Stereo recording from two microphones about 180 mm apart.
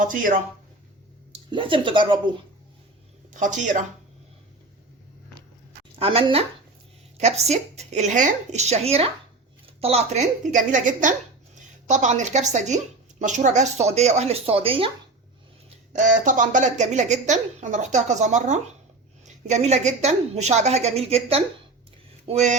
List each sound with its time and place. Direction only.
0.0 s speech: 50° right (ahead or behind)
1.5 s speech: 30° right (ahead or behind)
3.3 s speech: 45° right (ahead or behind)
6.0 s a woman's voice: 30° right (ahead or behind)
15.9 s a woman's voice: 45° right (ahead or behind)